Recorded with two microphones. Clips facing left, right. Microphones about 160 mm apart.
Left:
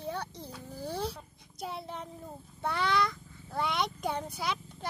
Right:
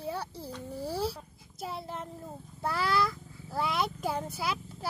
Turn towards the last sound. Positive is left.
turn(degrees=-5)  # may be behind; listen again after turning